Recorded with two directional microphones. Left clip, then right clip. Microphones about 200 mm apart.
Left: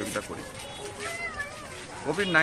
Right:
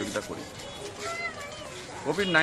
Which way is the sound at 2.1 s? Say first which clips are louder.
Even; 10° right (ahead or behind).